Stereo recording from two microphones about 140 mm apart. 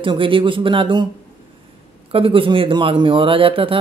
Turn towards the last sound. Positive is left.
turn(degrees=-40)  # may be behind; listen again after turning